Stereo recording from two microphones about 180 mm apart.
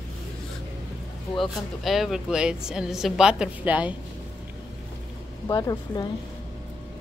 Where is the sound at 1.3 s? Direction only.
Centre (ahead or behind).